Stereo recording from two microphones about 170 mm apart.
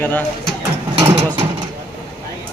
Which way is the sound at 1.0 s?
30° right (ahead or behind).